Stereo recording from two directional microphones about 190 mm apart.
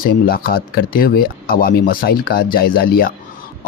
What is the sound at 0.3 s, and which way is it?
Speech, 55° left (ahead or behind).